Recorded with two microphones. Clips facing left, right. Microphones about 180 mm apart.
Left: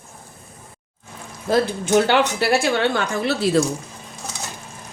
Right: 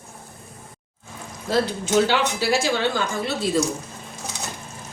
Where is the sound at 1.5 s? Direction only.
55° left (ahead or behind).